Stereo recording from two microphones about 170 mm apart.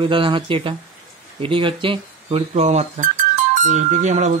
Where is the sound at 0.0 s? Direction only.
30° right (ahead or behind).